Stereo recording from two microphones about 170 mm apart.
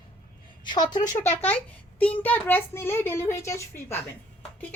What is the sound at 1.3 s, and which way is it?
A child's voice, 10° left (ahead or behind).